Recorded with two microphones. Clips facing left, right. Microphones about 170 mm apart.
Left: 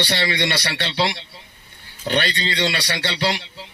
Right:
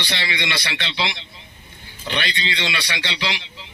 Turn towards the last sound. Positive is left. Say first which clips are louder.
# left 5 dB
turn(degrees=45)  # may be behind; listen again after turning